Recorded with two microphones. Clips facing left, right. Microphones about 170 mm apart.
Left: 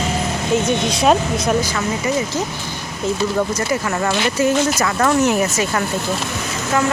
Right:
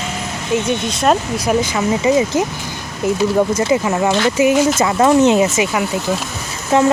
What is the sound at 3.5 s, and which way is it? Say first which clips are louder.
Speech: right 5 dB; 15° right (ahead or behind).